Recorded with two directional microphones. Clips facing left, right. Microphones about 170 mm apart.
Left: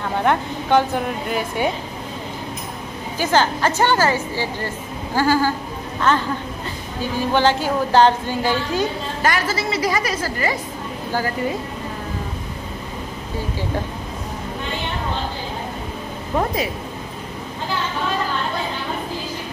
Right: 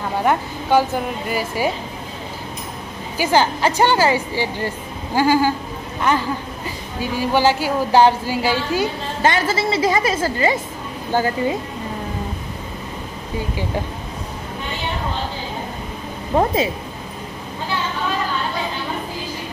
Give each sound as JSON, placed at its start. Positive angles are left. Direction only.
{"t": 0.2, "sound": "a woman's voice", "side_deg": -5}
{"t": 3.2, "sound": "a woman's voice", "side_deg": -10}
{"t": 9.2, "sound": "a woman's voice", "side_deg": -25}
{"t": 16.3, "sound": "a woman's voice", "side_deg": -25}